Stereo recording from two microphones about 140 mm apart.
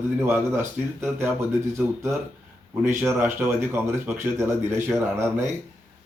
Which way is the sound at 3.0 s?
15° right (ahead or behind).